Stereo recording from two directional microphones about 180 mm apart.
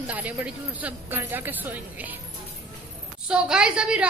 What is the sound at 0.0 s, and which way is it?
A woman's voice, 10° right (ahead or behind).